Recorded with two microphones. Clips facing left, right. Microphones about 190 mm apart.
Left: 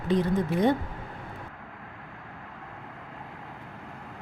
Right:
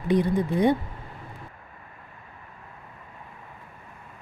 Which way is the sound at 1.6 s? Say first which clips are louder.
Left 4 dB; 80° left.